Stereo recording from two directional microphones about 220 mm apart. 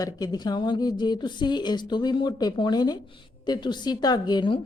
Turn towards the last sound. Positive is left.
turn(degrees=20)  # may be behind; listen again after turning